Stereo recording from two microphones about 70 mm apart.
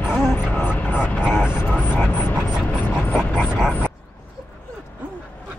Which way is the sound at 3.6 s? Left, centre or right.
Centre.